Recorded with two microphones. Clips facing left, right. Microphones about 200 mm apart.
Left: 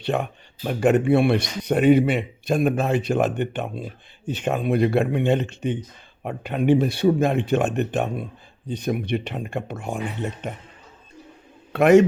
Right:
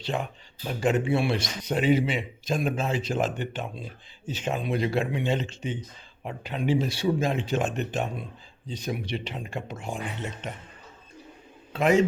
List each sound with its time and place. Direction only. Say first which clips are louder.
0.0 s speech: left 6 dB; 60° left (ahead or behind)
11.7 s a man's voice: left 7 dB; 70° left (ahead or behind)